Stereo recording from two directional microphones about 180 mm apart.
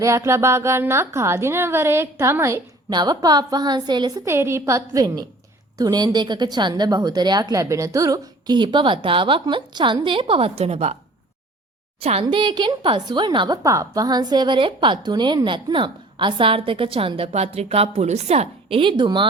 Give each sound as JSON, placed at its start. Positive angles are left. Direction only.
{"t": 0.0, "sound": "speech", "side_deg": -15}
{"t": 11.9, "sound": "speech", "side_deg": -35}